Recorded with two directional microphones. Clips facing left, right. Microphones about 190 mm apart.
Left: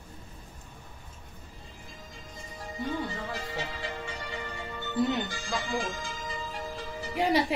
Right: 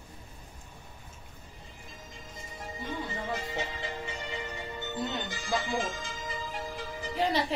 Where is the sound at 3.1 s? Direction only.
20° right (ahead or behind).